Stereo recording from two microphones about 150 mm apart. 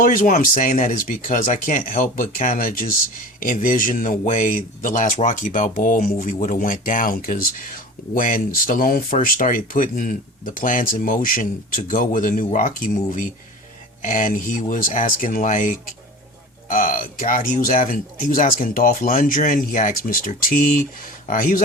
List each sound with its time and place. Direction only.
0.0 s speech: 55° left (ahead or behind)